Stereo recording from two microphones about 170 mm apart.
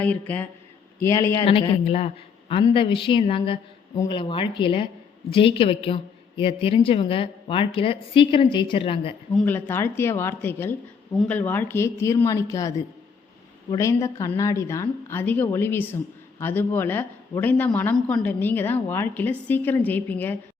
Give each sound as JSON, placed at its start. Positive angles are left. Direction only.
{"t": 0.0, "sound": "a woman's voice", "side_deg": 10}
{"t": 1.5, "sound": "a woman's voice", "side_deg": 30}
{"t": 9.3, "sound": "a woman's voice", "side_deg": 10}